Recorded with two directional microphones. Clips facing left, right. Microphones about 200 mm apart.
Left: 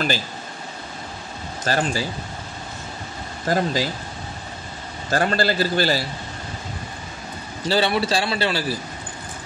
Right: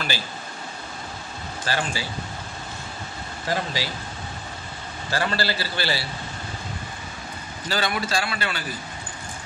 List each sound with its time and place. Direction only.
1.6 s speech: 45° left (ahead or behind)
3.4 s a man's voice: 45° left (ahead or behind)
5.1 s a man's voice: 50° left (ahead or behind)
7.6 s a man's voice: 30° left (ahead or behind)